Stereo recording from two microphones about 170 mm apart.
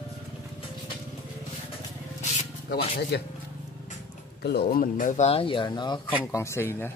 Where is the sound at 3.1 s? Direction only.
85° left.